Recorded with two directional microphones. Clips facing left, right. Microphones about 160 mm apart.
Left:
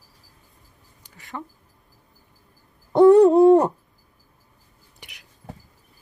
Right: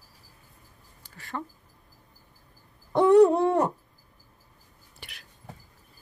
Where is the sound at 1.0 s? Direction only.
15° left (ahead or behind).